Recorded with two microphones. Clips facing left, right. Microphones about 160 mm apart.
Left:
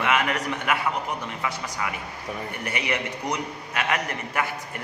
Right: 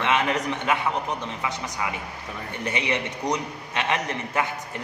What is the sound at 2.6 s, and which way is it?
A man's voice, 20° right (ahead or behind).